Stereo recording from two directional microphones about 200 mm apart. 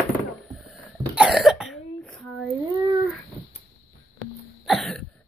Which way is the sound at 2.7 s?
15° right (ahead or behind).